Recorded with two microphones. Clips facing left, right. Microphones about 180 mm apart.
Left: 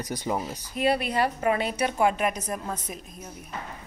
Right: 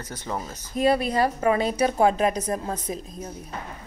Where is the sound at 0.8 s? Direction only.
40° right (ahead or behind).